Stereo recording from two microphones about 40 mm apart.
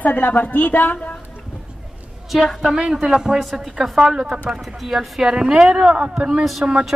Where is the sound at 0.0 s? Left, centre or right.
Left.